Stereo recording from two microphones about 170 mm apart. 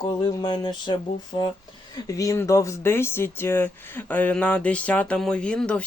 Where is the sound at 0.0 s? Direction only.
25° left (ahead or behind).